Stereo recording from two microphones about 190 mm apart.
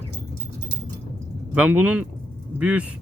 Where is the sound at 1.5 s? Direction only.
5° right (ahead or behind).